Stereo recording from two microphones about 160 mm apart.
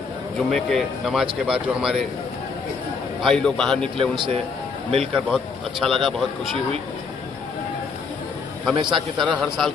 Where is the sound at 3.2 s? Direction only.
Centre (ahead or behind).